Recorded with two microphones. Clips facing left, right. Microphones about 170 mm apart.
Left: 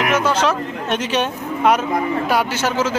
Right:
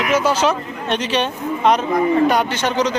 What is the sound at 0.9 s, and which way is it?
A man's voice, 10° left (ahead or behind).